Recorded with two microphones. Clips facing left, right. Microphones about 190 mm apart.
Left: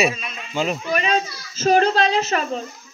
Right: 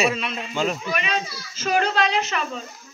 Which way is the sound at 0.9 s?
40° left (ahead or behind).